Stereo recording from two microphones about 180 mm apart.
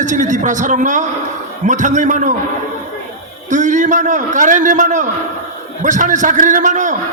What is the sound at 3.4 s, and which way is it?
A man's voice, 45° right (ahead or behind).